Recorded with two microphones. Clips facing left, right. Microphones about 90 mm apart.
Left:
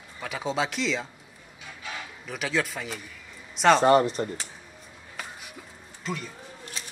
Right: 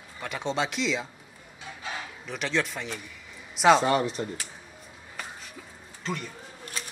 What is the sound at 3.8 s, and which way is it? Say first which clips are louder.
Speech: left 5 dB; 40° left (ahead or behind).